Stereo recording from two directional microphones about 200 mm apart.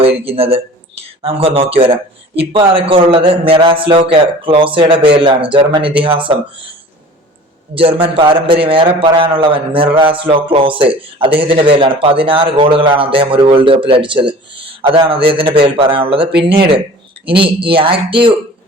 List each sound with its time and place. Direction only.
0.0 s speech: 30° right (ahead or behind)
7.8 s speech: 25° right (ahead or behind)